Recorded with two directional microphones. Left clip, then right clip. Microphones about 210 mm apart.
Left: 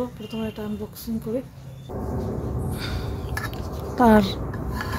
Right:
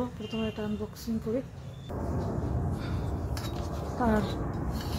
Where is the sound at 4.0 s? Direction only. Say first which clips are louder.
Left 12 dB; 45° left (ahead or behind).